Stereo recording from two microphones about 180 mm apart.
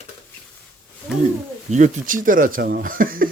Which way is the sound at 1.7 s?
40° right (ahead or behind).